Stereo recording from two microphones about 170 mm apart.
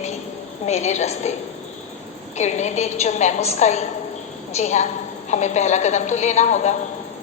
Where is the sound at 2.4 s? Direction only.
45° left (ahead or behind).